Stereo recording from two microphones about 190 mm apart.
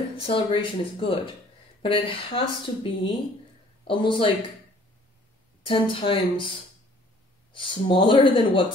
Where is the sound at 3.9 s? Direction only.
25° left (ahead or behind).